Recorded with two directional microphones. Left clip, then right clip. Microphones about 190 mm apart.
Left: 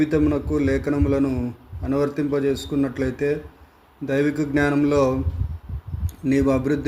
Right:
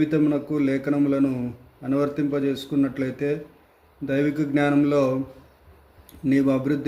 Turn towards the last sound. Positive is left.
turn(degrees=10)  # may be behind; listen again after turning